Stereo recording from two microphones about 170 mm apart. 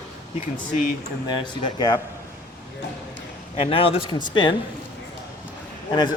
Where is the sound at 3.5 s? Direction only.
35° left (ahead or behind).